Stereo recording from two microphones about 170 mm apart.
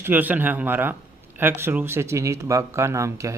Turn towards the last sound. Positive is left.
turn(degrees=-15)  # may be behind; listen again after turning